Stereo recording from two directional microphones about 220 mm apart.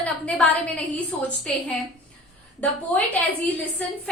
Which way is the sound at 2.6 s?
5° left (ahead or behind).